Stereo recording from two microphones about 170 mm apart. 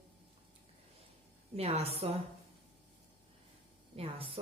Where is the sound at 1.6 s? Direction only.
35° right (ahead or behind).